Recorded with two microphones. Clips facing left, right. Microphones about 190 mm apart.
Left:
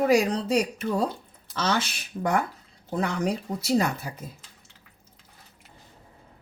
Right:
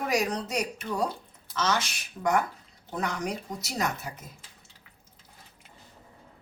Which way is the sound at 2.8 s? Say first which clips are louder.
Left 5 dB; 30° left (ahead or behind).